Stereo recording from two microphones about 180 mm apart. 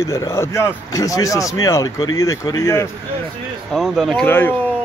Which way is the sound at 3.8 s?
Centre (ahead or behind).